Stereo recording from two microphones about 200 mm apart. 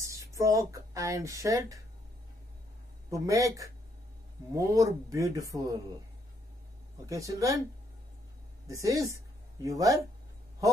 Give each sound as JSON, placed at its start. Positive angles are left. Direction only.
{"t": 0.0, "sound": "speech", "side_deg": -15}
{"t": 3.1, "sound": "speech", "side_deg": -15}
{"t": 7.1, "sound": "speech", "side_deg": -15}
{"t": 8.6, "sound": "speech", "side_deg": -15}